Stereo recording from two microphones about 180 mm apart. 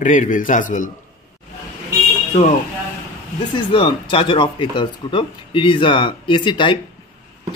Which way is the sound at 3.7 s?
30° left (ahead or behind).